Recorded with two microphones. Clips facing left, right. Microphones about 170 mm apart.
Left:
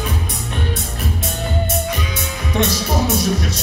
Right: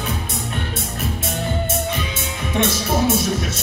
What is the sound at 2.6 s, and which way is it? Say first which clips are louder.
Speech: even; 25° right (ahead or behind).